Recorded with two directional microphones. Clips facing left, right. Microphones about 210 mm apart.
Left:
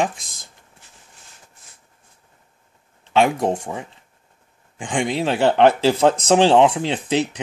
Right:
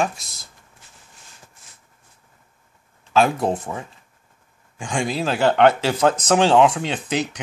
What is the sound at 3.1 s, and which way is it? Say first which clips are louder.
Speech: left 1 dB; 15° left (ahead or behind).